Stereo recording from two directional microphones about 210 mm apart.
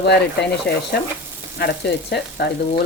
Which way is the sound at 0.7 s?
50° left (ahead or behind).